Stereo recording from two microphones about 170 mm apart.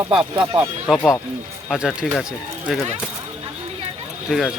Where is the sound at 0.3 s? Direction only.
15° right (ahead or behind).